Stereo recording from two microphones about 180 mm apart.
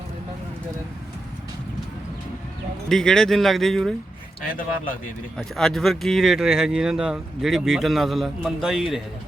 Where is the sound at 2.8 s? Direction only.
5° left (ahead or behind).